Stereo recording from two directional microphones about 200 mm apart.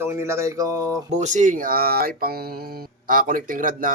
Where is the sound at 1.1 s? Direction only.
35° right (ahead or behind).